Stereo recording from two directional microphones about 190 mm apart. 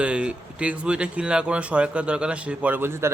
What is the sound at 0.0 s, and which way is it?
Speech, 5° right (ahead or behind).